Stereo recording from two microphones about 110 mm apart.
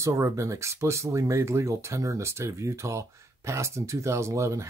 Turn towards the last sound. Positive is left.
turn(degrees=-30)  # may be behind; listen again after turning